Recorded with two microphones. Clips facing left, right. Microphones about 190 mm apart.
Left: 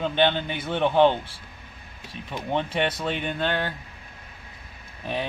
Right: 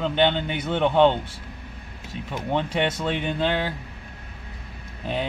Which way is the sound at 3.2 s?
10° right (ahead or behind).